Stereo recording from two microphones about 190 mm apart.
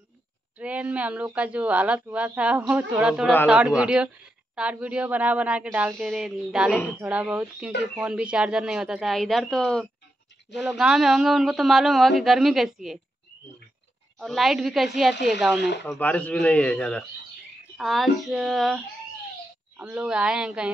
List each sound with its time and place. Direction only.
0.6 s a woman's voice: 5° right (ahead or behind)
14.1 s speech: centre (ahead or behind)
19.8 s speech: 5° right (ahead or behind)